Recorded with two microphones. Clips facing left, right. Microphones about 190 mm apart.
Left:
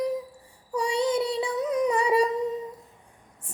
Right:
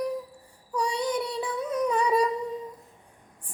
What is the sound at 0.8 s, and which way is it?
Child singing, 25° left (ahead or behind).